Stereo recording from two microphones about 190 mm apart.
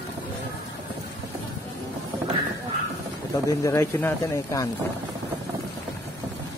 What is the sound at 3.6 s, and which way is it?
Speech, 15° left (ahead or behind).